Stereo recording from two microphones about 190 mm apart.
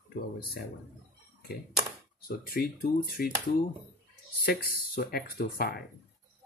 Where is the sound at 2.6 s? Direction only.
55° left (ahead or behind).